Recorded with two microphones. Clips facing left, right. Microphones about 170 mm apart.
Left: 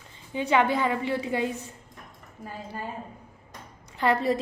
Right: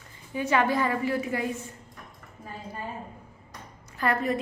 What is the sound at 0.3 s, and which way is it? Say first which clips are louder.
A woman's voice: left 1 dB; 20° left (ahead or behind).